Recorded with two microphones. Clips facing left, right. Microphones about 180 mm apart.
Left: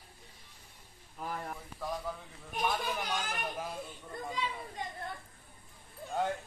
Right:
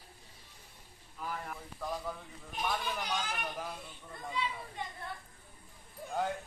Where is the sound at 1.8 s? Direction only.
Centre (ahead or behind).